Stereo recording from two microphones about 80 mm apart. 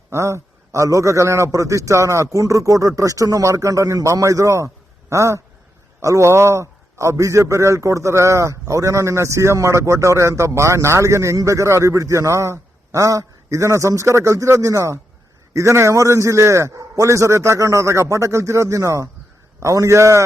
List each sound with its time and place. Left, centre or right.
0.1 s a man's voice: right